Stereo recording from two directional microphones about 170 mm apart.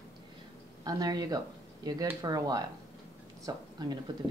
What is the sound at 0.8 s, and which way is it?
Speech, 25° right (ahead or behind).